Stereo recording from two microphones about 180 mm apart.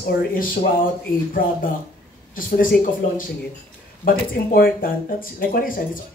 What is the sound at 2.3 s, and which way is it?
Speech, 50° left (ahead or behind).